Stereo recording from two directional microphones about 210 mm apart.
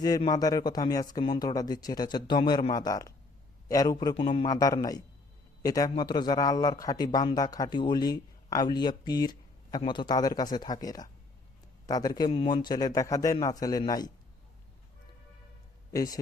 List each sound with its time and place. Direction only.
0.0 s a man's voice: 20° left (ahead or behind)
15.9 s speech: 15° left (ahead or behind)